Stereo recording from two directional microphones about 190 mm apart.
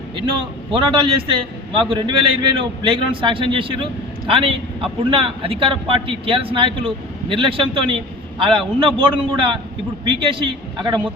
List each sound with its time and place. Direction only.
0.7 s speech: 25° right (ahead or behind)